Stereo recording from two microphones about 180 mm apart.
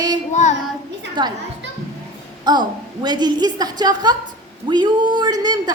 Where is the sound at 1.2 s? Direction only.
25° right (ahead or behind).